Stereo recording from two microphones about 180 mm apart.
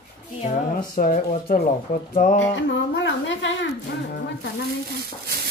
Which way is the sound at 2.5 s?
90° left.